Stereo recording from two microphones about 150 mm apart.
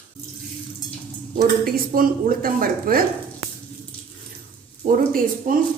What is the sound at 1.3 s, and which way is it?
Speech, 75° right (ahead or behind).